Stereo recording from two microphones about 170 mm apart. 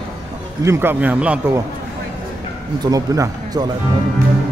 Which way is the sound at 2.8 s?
20° right (ahead or behind).